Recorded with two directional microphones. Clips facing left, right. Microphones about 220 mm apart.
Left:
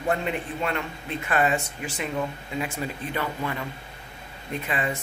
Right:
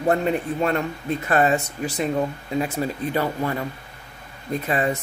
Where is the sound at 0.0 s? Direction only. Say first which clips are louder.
Right 6 dB; 40° right (ahead or behind).